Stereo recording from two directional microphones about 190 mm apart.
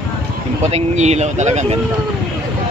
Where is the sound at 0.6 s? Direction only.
35° right (ahead or behind).